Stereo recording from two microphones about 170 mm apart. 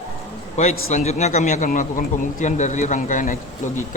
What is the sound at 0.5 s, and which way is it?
A man's voice, 40° left (ahead or behind).